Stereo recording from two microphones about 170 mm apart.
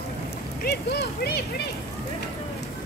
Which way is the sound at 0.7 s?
70° left (ahead or behind).